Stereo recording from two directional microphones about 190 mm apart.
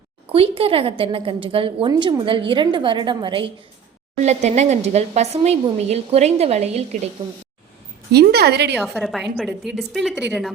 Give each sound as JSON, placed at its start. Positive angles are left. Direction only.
{"t": 0.3, "sound": "a woman's voice", "side_deg": -30}
{"t": 4.2, "sound": "speech", "side_deg": -35}
{"t": 8.1, "sound": "a woman's voice", "side_deg": -60}
{"t": 8.8, "sound": "a woman's voice", "side_deg": 0}